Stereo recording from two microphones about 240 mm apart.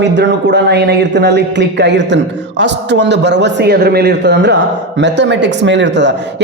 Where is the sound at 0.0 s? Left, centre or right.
Right.